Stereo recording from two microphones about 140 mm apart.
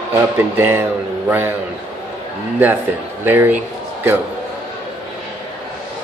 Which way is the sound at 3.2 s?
15° right (ahead or behind).